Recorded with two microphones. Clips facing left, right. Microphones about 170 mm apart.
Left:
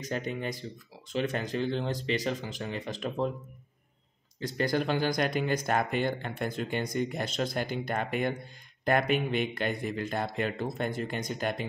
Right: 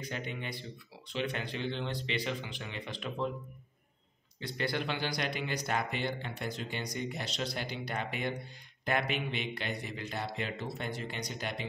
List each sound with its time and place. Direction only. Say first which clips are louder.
0.0 s speech: left 6 dB; 40° left (ahead or behind)
4.4 s speech: left 6 dB; 45° left (ahead or behind)